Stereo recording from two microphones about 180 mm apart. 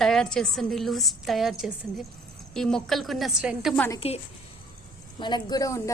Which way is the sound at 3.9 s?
35° left (ahead or behind).